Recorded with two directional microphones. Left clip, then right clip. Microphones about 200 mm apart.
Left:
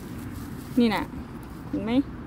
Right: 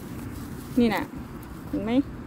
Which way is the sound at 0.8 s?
Centre (ahead or behind).